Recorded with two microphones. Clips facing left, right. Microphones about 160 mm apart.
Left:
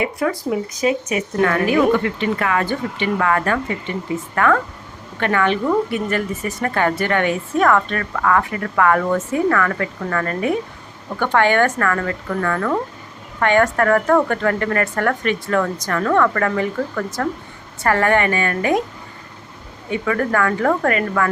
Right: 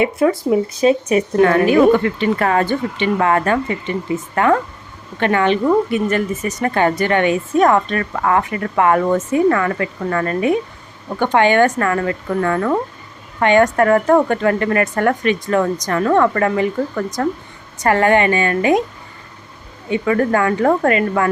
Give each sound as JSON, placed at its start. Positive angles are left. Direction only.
{"t": 0.0, "sound": "a woman's voice", "side_deg": -25}
{"t": 2.6, "sound": "a woman's voice", "side_deg": -25}
{"t": 19.9, "sound": "a woman's voice", "side_deg": -25}